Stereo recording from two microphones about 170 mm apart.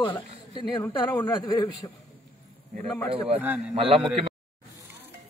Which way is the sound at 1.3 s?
30° left (ahead or behind).